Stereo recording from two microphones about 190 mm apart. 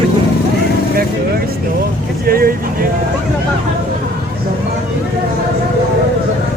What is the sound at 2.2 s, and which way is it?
Speech, 50° right (ahead or behind).